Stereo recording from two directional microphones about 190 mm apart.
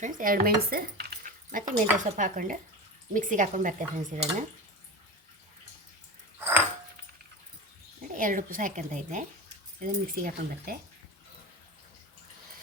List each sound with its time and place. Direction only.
0.0 s speech: 45° right (ahead or behind)
8.1 s speech: 45° right (ahead or behind)